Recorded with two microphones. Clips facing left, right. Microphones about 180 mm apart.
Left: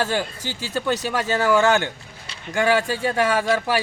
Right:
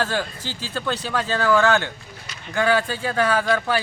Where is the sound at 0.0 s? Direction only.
15° left (ahead or behind).